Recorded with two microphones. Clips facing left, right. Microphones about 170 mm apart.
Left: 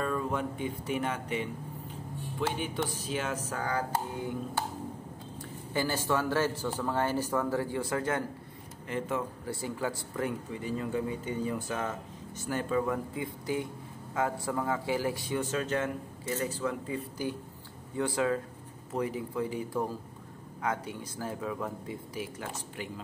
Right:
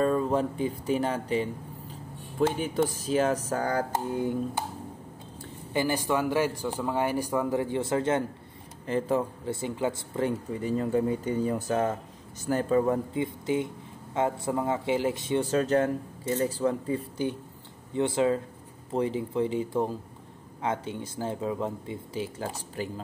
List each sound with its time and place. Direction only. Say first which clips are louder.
0.0 s speech: right 7 dB; 35° right (ahead or behind)
2.3 s speech: right 7 dB; 45° right (ahead or behind)
5.7 s speech: right 3 dB; 20° right (ahead or behind)
10.5 s speech: right 6 dB; 40° right (ahead or behind); by 15.4 s 20° right (ahead or behind)
15.5 s speech: right 9 dB; 35° right (ahead or behind)
17.9 s speech: right 4 dB; 25° right (ahead or behind)